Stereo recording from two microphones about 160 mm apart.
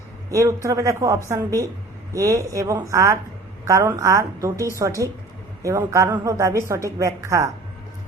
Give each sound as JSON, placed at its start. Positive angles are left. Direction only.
{"t": 0.3, "sound": "a woman's voice", "side_deg": -20}